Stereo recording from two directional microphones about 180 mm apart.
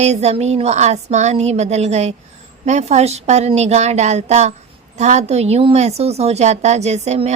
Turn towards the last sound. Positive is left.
turn(degrees=-40)  # may be behind; listen again after turning